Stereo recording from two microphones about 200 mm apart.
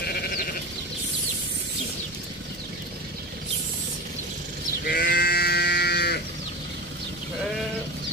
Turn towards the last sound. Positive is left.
turn(degrees=55)  # may be behind; listen again after turning